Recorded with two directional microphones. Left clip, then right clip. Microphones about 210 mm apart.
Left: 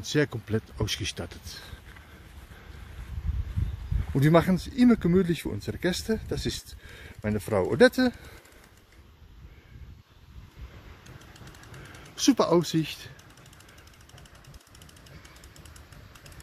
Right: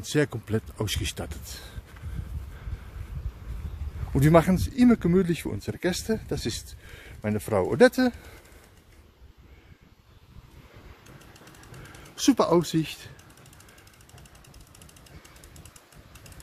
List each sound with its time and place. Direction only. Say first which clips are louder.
0.0 s speech: right 1 dB; centre (ahead or behind)
4.1 s speech: right 2 dB; centre (ahead or behind)
12.2 s speech: right 1 dB; centre (ahead or behind)